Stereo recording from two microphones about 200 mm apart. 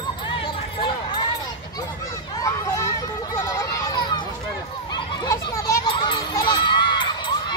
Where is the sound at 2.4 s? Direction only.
15° left (ahead or behind).